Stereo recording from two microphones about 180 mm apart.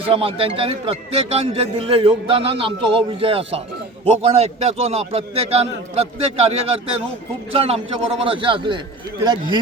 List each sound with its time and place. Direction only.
0.0 s a man's voice: 30° right (ahead or behind)